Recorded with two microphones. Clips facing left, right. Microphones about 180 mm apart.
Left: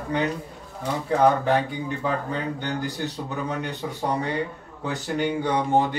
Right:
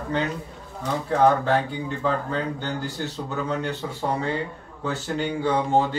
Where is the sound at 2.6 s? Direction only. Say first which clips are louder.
Left 1 dB; 15° left (ahead or behind).